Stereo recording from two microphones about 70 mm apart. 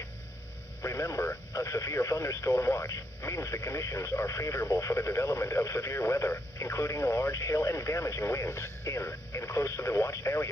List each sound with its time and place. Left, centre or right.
0.8 s speech: left